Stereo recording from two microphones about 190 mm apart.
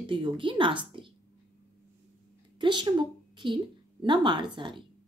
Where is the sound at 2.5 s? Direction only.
25° right (ahead or behind).